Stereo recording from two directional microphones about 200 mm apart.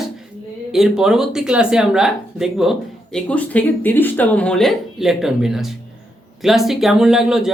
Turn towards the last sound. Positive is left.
turn(degrees=0)  # may be behind; listen again after turning